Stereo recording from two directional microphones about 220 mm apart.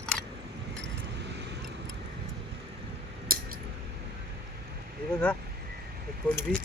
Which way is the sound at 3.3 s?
40° right (ahead or behind).